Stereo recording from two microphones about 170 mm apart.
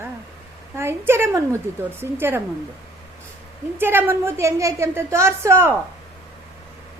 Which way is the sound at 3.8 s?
15° right (ahead or behind).